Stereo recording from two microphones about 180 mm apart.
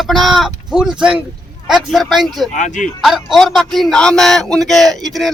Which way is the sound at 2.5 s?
45° left (ahead or behind).